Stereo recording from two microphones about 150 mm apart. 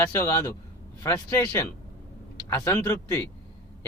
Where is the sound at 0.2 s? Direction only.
20° left (ahead or behind).